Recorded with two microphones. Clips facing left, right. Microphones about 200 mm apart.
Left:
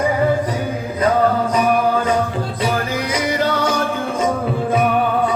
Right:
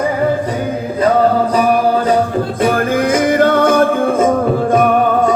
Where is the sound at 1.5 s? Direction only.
35° right (ahead or behind).